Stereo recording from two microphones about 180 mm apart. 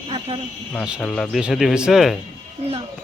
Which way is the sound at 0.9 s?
Centre (ahead or behind).